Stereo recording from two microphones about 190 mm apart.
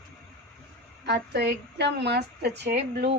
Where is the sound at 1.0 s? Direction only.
60° right (ahead or behind).